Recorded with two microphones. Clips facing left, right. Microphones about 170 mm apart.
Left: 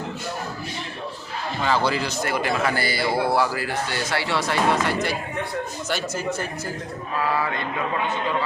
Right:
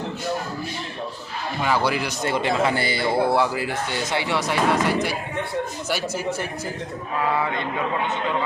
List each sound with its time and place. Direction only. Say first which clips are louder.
1.6 s a man's voice: even; 10° right (ahead or behind)